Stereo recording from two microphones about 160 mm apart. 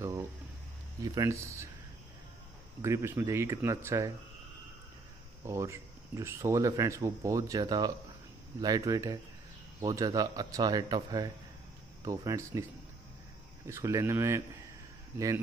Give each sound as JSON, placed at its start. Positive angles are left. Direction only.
{"t": 1.0, "sound": "speech", "side_deg": -20}
{"t": 2.8, "sound": "speech", "side_deg": -15}
{"t": 5.4, "sound": "speech", "side_deg": -15}
{"t": 13.7, "sound": "speech", "side_deg": -20}